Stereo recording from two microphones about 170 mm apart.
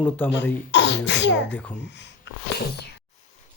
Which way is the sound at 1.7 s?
90° left.